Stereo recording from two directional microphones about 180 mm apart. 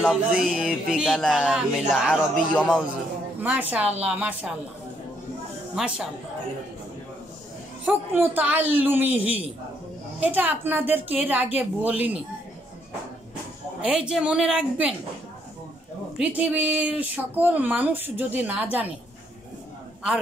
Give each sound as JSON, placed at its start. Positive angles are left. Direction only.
{"t": 0.0, "sound": "speech", "side_deg": -5}
{"t": 5.8, "sound": "speech", "side_deg": -5}
{"t": 7.8, "sound": "speech", "side_deg": -10}
{"t": 13.7, "sound": "speech", "side_deg": -5}
{"t": 16.2, "sound": "speech", "side_deg": -10}